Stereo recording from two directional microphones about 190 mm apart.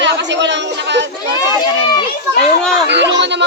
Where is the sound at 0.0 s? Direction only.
70° right (ahead or behind).